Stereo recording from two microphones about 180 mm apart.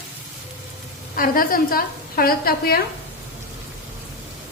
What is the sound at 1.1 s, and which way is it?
A woman's voice, 50° left (ahead or behind).